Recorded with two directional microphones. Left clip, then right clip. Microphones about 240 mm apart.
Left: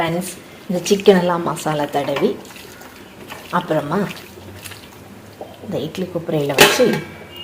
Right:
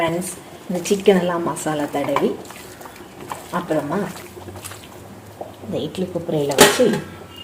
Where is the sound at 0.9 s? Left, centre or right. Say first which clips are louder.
Left 3 dB; centre.